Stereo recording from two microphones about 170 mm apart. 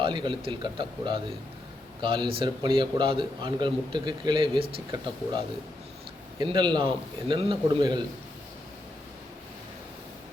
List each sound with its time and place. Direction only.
0.0 s a man's voice: 25° right (ahead or behind)
6.4 s a man's voice: 25° right (ahead or behind)